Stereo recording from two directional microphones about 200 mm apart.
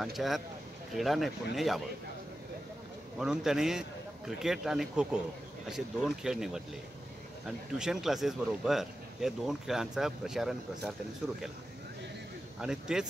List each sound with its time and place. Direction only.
0.0 s speech: centre (ahead or behind)
3.2 s speech: 5° right (ahead or behind)
12.5 s speech: 5° right (ahead or behind)